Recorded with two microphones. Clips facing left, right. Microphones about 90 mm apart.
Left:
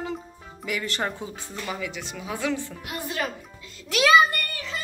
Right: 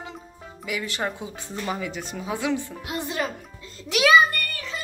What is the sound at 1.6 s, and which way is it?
Speech, 35° right (ahead or behind).